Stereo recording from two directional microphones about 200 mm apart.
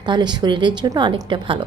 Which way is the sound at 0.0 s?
20° right (ahead or behind).